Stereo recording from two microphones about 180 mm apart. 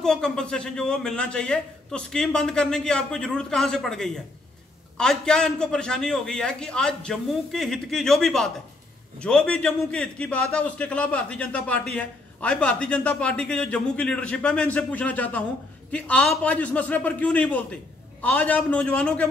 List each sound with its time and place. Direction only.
0.0 s a man's voice: 5° left (ahead or behind)